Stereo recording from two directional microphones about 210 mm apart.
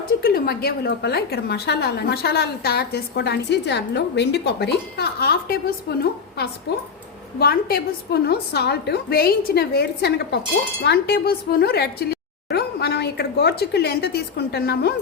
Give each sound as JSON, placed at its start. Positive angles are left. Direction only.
{"t": 0.2, "sound": "a woman's voice", "side_deg": 45}